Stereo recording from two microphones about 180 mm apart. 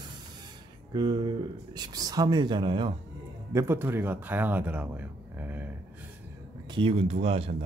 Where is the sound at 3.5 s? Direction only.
15° right (ahead or behind).